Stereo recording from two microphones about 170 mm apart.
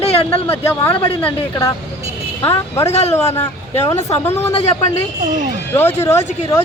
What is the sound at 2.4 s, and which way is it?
Speech, 15° left (ahead or behind).